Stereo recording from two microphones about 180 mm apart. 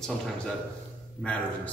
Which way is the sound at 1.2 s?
5° left (ahead or behind).